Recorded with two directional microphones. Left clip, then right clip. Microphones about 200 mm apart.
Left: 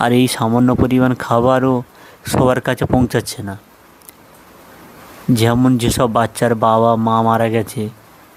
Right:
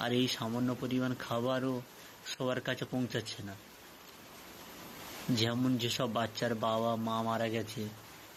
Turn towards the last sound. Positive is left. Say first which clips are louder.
# left 18 dB
turn(degrees=45)  # may be behind; listen again after turning